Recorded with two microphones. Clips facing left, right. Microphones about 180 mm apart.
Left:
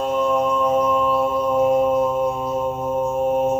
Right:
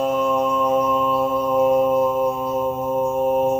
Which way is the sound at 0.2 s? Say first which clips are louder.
Left 1 dB; centre (ahead or behind).